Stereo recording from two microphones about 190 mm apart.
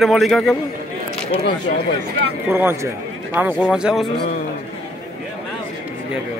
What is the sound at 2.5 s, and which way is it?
Speech, 10° right (ahead or behind).